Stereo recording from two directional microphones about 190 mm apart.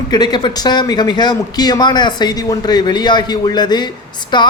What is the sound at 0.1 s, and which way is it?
Speech, 20° left (ahead or behind).